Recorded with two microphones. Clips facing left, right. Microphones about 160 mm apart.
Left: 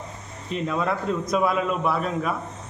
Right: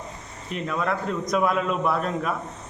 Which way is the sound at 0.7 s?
5° left (ahead or behind).